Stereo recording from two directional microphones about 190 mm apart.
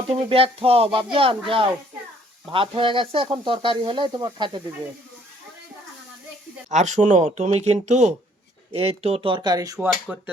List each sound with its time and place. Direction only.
0.1 s speech: 30° right (ahead or behind)
6.7 s speech: 40° right (ahead or behind); by 9.7 s 20° right (ahead or behind)
9.7 s speech: 5° right (ahead or behind)